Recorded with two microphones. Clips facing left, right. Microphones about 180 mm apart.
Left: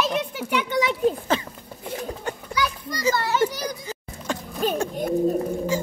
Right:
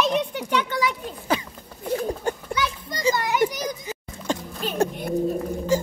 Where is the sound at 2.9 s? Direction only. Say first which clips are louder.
Right 1 dB; 20° right (ahead or behind).